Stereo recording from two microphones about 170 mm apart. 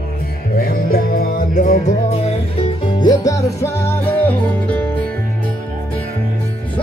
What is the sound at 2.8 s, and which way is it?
Music, 20° left (ahead or behind).